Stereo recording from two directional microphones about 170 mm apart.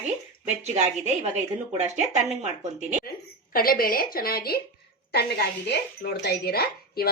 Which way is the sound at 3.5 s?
60° left (ahead or behind).